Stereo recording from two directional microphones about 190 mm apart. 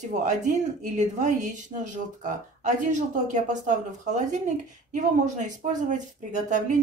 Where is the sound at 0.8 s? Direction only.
40° right (ahead or behind).